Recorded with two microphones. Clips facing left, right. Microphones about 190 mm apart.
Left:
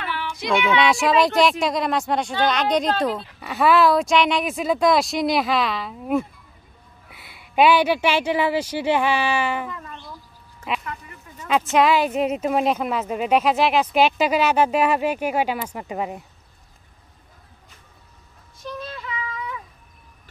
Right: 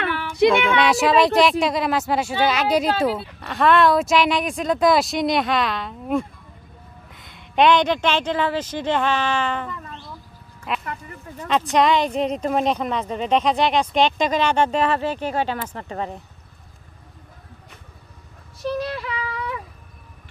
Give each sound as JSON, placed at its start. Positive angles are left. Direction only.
{"t": 0.1, "sound": "child singing", "side_deg": -45}
{"t": 0.7, "sound": "speech", "side_deg": 0}
{"t": 3.3, "sound": "speech", "side_deg": 5}
{"t": 10.7, "sound": "a sound", "side_deg": 0}
{"t": 11.4, "sound": "speech", "side_deg": 5}
{"t": 18.6, "sound": "female singing", "side_deg": -70}